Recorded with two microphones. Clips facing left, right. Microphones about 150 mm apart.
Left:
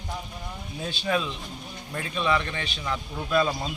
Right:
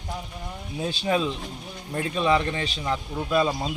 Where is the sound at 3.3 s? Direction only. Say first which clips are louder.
Right 1 dB; 20° right (ahead or behind).